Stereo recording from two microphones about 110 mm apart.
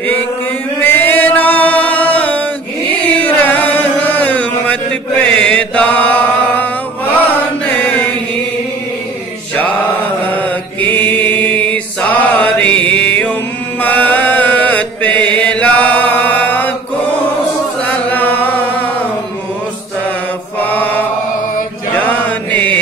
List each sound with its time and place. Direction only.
0.7 s music: 20° left (ahead or behind)
2.9 s chant: 15° left (ahead or behind)
7.6 s mantra: 15° left (ahead or behind)
10.3 s mantra: 15° left (ahead or behind)
13.7 s chant: 15° left (ahead or behind)
15.1 s chant: 45° right (ahead or behind)
15.4 s chant: 10° left (ahead or behind)
17.8 s chant: 15° left (ahead or behind)
20.6 s mantra: 15° left (ahead or behind)